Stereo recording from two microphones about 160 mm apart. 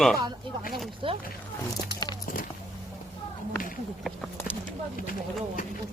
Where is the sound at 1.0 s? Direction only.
35° right (ahead or behind).